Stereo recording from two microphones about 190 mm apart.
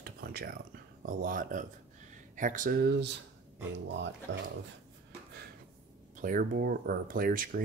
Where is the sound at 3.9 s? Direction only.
70° right (ahead or behind).